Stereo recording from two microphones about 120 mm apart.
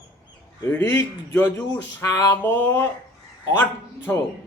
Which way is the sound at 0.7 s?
15° left (ahead or behind).